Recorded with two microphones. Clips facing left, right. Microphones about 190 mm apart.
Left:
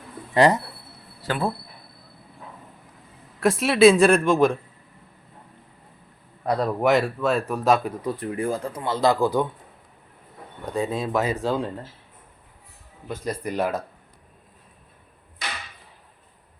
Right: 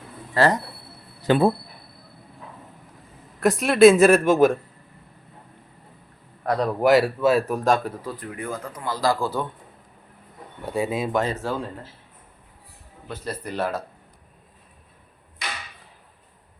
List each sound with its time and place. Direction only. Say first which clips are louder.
0.3 s speech: left 2 dB; 15° left (ahead or behind)
1.2 s speech: right 8 dB; 20° right (ahead or behind)
3.4 s speech: right 2 dB; centre (ahead or behind)
6.6 s speech: right 3 dB; centre (ahead or behind)
8.0 s a man's voice: left 6 dB; 25° left (ahead or behind)
10.7 s speech: right 1 dB; 10° right (ahead or behind)
11.2 s speech: left 2 dB; 10° left (ahead or behind)
13.1 s speech: left 3 dB; 10° left (ahead or behind)